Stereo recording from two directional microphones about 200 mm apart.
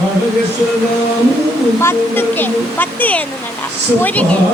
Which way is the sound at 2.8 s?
10° left (ahead or behind).